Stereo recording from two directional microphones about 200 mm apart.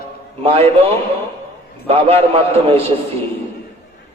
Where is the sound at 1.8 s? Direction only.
30° right (ahead or behind).